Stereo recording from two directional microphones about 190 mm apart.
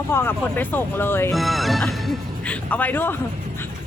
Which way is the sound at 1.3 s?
Centre (ahead or behind).